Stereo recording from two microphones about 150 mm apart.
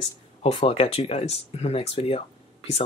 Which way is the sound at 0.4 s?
40° left (ahead or behind).